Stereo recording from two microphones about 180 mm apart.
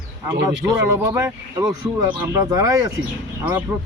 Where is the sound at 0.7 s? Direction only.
20° right (ahead or behind).